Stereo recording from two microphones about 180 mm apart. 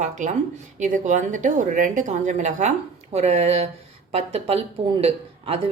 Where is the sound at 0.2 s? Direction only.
40° right (ahead or behind).